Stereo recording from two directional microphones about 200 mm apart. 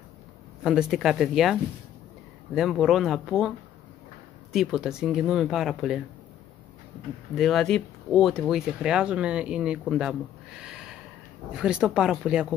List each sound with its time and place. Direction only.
0.7 s speech: 5° right (ahead or behind)
7.3 s speech: centre (ahead or behind)
10.6 s snort: 5° right (ahead or behind)
11.5 s speech: 5° right (ahead or behind)